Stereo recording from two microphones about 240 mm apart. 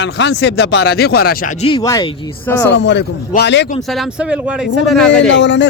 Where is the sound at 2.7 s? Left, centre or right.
Left.